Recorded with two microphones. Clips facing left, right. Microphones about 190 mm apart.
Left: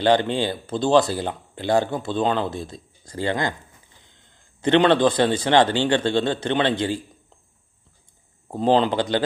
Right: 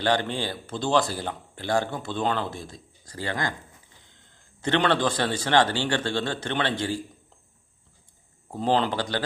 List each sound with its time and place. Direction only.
0.0 s speech: 20° left (ahead or behind)
4.6 s speech: 20° left (ahead or behind)
8.5 s speech: 20° left (ahead or behind)